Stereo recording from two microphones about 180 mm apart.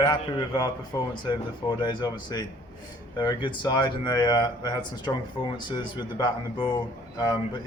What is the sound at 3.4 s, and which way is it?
Speech, 25° left (ahead or behind).